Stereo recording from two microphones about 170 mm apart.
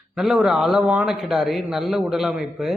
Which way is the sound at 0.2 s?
Centre (ahead or behind).